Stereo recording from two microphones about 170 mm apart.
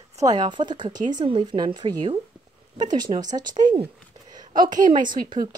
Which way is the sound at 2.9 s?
25° right (ahead or behind).